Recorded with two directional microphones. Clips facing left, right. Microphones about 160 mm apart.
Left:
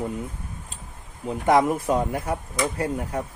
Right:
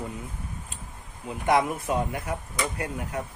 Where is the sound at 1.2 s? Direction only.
40° left (ahead or behind).